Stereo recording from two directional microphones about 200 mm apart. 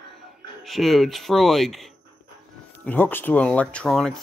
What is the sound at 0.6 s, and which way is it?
Speech, centre (ahead or behind).